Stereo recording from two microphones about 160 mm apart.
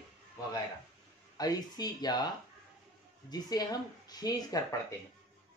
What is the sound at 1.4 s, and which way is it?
Speech, 25° left (ahead or behind).